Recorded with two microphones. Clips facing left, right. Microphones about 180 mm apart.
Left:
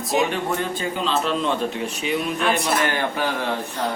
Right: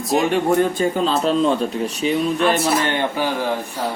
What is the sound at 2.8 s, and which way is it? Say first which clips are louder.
Speech: right 2 dB; 25° right (ahead or behind).